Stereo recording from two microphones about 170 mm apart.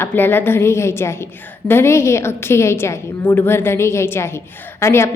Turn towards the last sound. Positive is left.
turn(degrees=15)  # may be behind; listen again after turning